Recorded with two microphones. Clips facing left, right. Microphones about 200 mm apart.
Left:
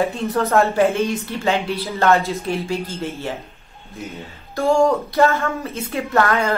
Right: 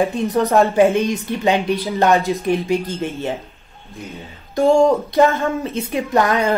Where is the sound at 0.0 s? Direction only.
15° right (ahead or behind).